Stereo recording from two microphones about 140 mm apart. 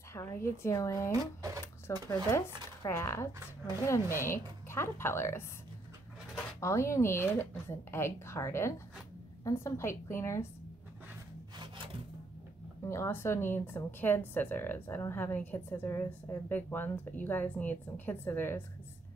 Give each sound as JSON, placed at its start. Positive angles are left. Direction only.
{"t": 0.1, "sound": "a woman's voice", "side_deg": 20}
{"t": 1.2, "sound": "speech", "side_deg": -25}
{"t": 1.9, "sound": "speech", "side_deg": 20}
{"t": 6.6, "sound": "speech", "side_deg": 20}
{"t": 12.8, "sound": "a woman's voice", "side_deg": 20}